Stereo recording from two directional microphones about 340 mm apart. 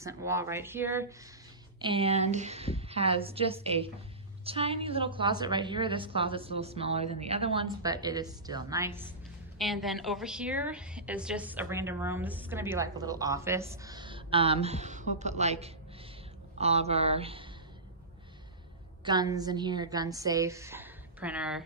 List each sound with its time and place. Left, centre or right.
0.0 s a woman's voice: centre
19.0 s a woman's voice: centre